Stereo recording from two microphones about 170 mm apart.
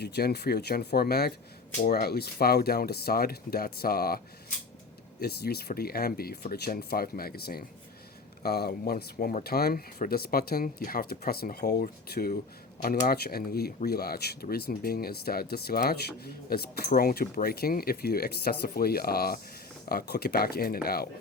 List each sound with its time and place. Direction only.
0.0 s speech: 70° left (ahead or behind)
5.2 s speech: 65° left (ahead or behind)